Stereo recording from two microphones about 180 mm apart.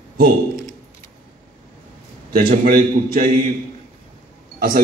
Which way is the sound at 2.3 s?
55° right (ahead or behind).